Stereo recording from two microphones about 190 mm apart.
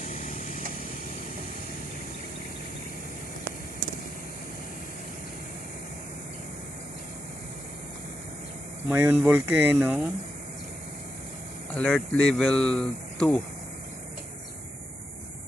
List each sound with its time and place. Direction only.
0.0 s a sound: 40° left (ahead or behind)
8.9 s speech: 10° right (ahead or behind)
11.7 s speech: 5° left (ahead or behind)